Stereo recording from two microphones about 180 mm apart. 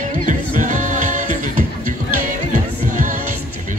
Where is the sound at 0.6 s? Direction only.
45° right (ahead or behind).